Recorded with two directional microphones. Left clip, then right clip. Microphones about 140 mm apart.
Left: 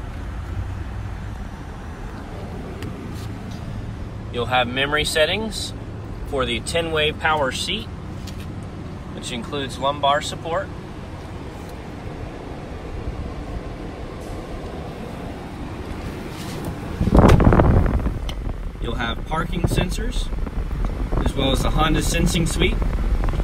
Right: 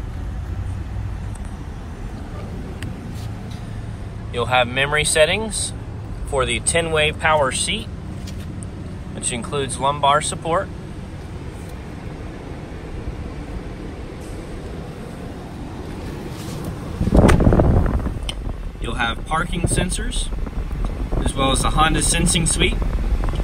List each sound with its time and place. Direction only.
4.3 s speech: 15° left (ahead or behind)
9.2 s speech: centre (ahead or behind)
17.1 s a sound: 15° right (ahead or behind)
18.9 s vehicle: centre (ahead or behind)
20.8 s speech: 5° right (ahead or behind)